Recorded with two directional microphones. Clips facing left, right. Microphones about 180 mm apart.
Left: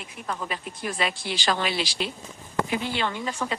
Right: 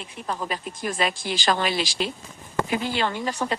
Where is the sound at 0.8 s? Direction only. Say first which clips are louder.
Right 3 dB; 45° right (ahead or behind).